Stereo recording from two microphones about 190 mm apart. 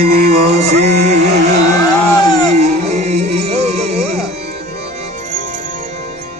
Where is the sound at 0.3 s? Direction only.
35° right (ahead or behind).